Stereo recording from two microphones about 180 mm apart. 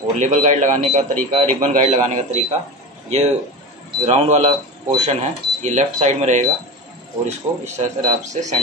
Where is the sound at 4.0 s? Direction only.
35° right (ahead or behind).